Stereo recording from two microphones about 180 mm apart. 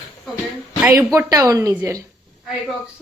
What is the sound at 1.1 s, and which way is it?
Speech, 15° right (ahead or behind).